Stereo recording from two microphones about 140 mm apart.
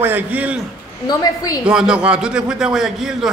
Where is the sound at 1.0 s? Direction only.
25° left (ahead or behind).